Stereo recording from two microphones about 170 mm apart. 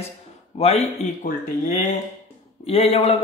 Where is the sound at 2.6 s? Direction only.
35° left (ahead or behind).